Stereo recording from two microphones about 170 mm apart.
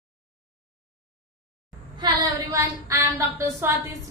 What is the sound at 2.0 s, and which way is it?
A woman's voice, 20° right (ahead or behind).